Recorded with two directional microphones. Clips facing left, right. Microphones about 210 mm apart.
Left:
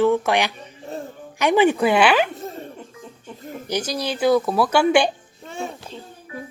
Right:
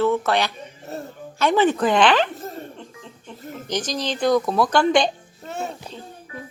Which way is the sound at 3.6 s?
10° left (ahead or behind).